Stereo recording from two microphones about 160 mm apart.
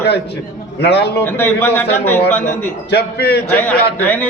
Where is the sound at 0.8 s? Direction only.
90° left.